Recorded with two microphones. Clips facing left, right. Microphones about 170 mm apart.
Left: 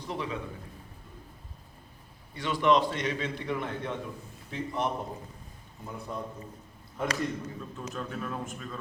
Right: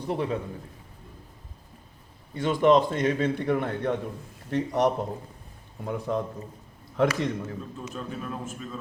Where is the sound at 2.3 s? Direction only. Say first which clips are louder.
Right 5 dB; 45° right (ahead or behind).